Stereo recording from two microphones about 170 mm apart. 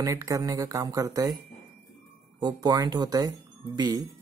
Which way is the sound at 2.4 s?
20° right (ahead or behind).